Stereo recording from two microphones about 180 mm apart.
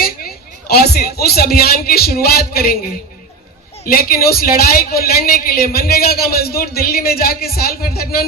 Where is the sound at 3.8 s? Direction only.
55° left (ahead or behind).